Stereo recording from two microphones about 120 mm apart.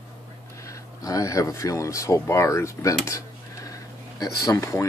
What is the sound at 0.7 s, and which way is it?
Speech, 25° left (ahead or behind).